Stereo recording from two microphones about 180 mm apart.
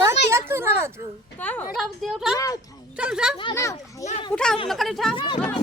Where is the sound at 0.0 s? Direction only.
15° right (ahead or behind).